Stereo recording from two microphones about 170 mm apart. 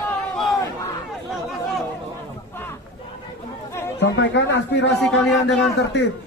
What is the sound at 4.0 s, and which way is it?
Speech, 90° left.